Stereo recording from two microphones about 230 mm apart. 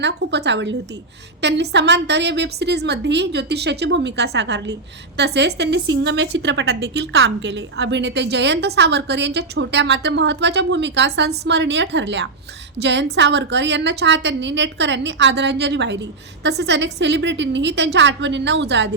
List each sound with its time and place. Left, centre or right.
0.0 s a woman's voice: right